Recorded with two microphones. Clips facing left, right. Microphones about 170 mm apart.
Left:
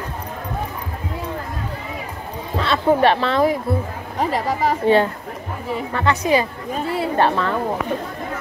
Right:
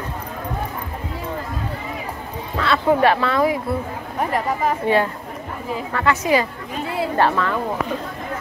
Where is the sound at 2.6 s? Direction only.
25° left (ahead or behind).